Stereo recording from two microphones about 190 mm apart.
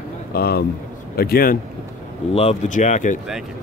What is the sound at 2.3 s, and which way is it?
Speech, 35° left (ahead or behind).